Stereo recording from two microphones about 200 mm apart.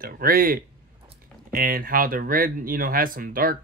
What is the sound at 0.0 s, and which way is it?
A man's voice, 45° right (ahead or behind).